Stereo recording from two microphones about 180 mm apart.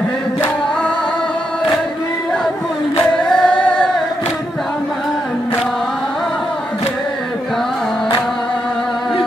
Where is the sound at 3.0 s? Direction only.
5° left (ahead or behind).